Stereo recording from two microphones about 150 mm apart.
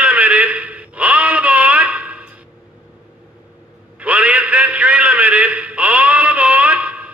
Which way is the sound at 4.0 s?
10° right (ahead or behind).